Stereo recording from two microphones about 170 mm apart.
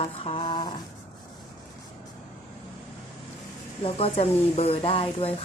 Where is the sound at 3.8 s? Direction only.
35° left (ahead or behind).